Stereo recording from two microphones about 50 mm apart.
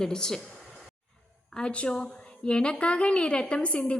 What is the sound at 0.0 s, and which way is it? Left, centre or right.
Speech, centre.